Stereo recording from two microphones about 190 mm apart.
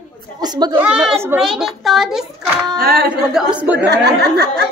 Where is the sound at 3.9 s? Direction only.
60° right (ahead or behind).